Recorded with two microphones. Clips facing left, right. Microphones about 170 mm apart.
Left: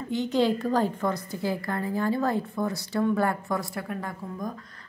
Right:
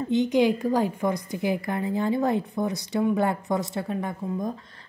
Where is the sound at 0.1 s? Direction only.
15° right (ahead or behind).